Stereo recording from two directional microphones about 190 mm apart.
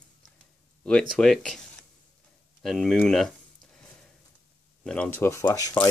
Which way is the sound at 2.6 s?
Centre (ahead or behind).